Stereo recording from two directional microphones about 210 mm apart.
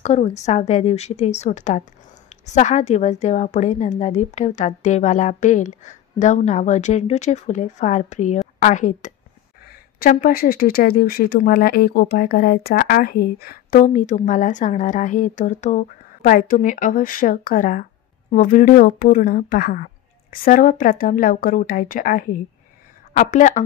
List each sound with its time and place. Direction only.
0.0 s a woman's voice: 30° left (ahead or behind)